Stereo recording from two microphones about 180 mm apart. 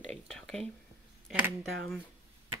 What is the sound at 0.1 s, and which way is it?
Whispering, 5° left (ahead or behind).